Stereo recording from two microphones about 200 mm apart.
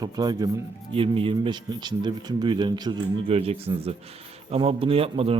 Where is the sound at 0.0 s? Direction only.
20° right (ahead or behind).